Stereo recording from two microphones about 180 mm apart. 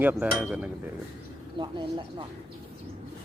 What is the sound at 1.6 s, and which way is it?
Speech, 25° right (ahead or behind).